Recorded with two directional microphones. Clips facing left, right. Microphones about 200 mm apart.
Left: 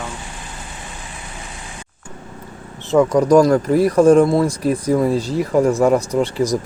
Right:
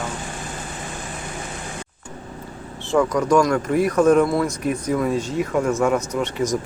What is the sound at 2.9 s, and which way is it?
Speech, 20° left (ahead or behind).